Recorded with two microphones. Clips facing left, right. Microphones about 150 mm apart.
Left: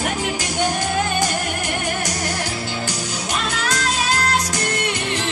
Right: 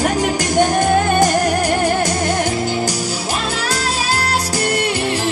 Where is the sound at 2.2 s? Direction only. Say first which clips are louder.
Right 7 dB; 25° right (ahead or behind).